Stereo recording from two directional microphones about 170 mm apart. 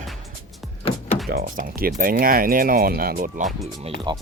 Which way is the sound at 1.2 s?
60° right (ahead or behind).